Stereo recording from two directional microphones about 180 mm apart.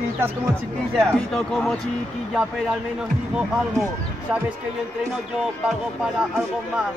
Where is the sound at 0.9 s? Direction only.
Centre (ahead or behind).